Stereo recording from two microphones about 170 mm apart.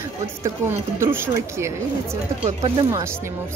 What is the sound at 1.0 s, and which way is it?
Speech, 15° right (ahead or behind).